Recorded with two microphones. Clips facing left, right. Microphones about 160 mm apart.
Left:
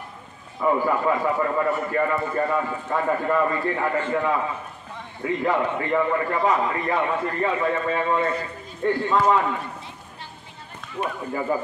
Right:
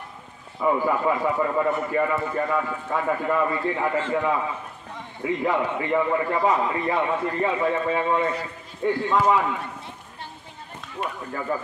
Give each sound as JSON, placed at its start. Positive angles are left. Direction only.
{"t": 0.6, "sound": "a man's voice", "side_deg": -10}
{"t": 2.3, "sound": "a man's voice", "side_deg": 5}
{"t": 11.0, "sound": "speech", "side_deg": 15}